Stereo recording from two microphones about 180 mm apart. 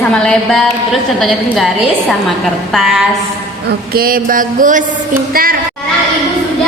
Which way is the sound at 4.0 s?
55° right (ahead or behind).